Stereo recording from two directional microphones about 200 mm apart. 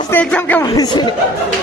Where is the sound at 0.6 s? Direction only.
20° left (ahead or behind).